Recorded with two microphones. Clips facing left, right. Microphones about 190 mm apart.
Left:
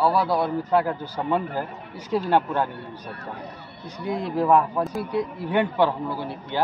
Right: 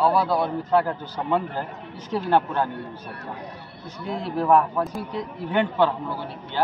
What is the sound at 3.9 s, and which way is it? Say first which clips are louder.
A man's voice: left 2 dB; 15° left (ahead or behind).